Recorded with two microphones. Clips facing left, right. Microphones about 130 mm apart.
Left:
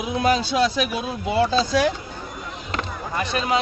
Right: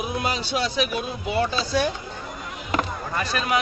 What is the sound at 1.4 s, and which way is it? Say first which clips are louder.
Speech: left 4 dB; 90° left.